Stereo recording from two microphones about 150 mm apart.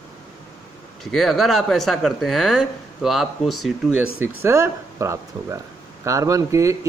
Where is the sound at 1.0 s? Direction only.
Centre (ahead or behind).